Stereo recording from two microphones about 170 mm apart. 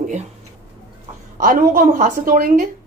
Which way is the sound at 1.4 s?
55° right (ahead or behind).